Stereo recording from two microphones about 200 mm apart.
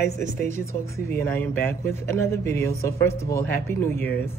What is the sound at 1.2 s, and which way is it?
A man's voice, 10° left (ahead or behind).